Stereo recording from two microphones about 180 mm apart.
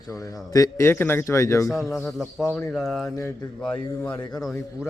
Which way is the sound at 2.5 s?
Centre (ahead or behind).